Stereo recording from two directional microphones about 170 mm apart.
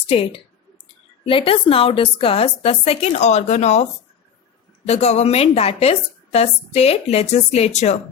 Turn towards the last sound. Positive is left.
turn(degrees=40)  # may be behind; listen again after turning